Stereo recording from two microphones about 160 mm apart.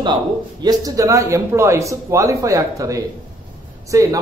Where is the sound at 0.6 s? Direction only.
20° right (ahead or behind).